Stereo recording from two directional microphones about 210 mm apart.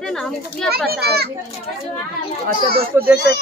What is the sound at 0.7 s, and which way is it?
Speech, 50° right (ahead or behind).